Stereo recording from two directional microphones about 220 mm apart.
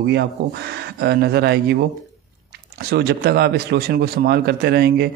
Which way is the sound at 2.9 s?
45° right (ahead or behind).